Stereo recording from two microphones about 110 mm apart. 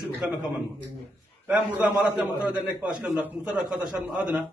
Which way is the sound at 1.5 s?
15° right (ahead or behind).